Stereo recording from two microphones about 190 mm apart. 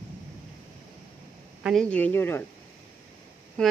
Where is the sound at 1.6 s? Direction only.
Centre (ahead or behind).